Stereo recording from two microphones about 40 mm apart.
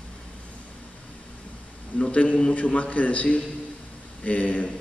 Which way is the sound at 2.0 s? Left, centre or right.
Left.